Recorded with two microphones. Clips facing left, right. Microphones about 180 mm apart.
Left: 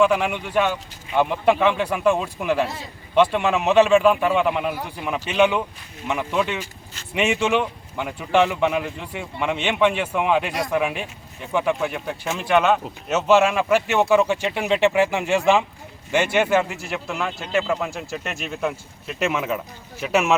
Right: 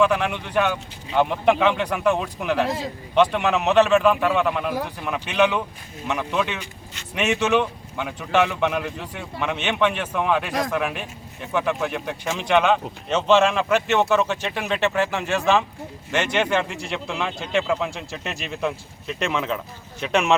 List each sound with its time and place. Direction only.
0.0 s speech: 10° left (ahead or behind)